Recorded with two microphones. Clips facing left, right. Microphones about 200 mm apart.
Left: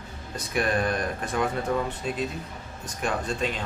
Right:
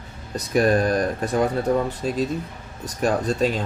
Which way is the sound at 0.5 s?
40° right (ahead or behind).